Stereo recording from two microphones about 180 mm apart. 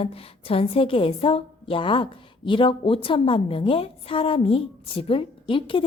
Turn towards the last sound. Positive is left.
turn(degrees=30)  # may be behind; listen again after turning